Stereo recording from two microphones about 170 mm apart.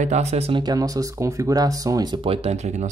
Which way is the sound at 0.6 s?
20° right (ahead or behind).